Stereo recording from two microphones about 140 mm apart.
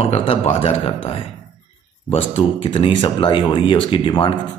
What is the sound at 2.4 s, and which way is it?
Speech, 40° left (ahead or behind).